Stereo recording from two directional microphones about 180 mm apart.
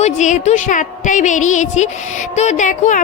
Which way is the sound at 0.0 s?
45° left (ahead or behind).